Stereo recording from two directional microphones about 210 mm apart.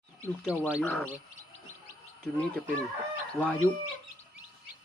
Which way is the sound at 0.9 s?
5° left (ahead or behind).